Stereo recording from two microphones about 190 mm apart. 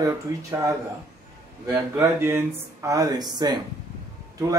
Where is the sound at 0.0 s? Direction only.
15° right (ahead or behind).